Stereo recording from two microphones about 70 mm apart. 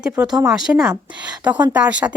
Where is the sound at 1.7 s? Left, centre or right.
Centre.